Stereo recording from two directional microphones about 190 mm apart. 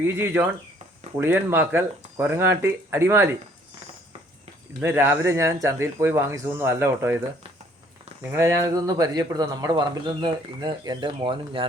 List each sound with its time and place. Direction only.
0.0 s speech: 10° right (ahead or behind)
4.8 s speech: 10° right (ahead or behind)
8.2 s speech: 15° right (ahead or behind)